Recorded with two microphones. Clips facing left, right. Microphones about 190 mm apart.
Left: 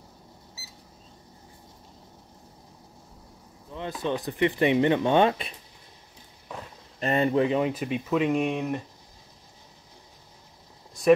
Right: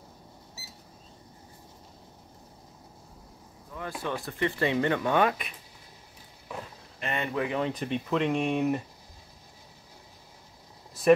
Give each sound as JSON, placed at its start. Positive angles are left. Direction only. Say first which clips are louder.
{"t": 3.7, "sound": "speech", "louder": "left 4 dB", "side_deg": 20}
{"t": 7.0, "sound": "speech", "louder": "left 8 dB", "side_deg": 35}
{"t": 7.6, "sound": "speech", "louder": "left 2 dB", "side_deg": 5}
{"t": 11.0, "sound": "a sound", "louder": "left 1 dB", "side_deg": -5}